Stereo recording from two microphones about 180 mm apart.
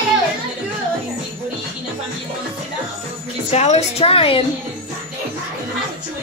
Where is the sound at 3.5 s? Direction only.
40° left (ahead or behind).